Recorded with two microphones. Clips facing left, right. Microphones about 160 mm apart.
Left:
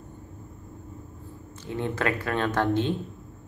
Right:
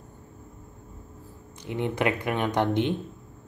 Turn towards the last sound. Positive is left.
turn(degrees=-20)  # may be behind; listen again after turning